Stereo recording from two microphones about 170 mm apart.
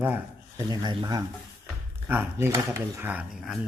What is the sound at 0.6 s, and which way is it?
Speech, 25° right (ahead or behind).